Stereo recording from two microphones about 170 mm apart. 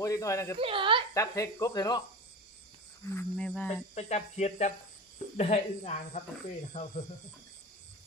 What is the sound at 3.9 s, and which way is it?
Speech, 45° left (ahead or behind).